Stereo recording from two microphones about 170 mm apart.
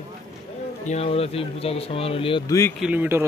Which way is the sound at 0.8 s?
35° left (ahead or behind).